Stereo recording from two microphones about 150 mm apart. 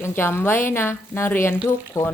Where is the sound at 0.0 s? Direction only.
15° left (ahead or behind).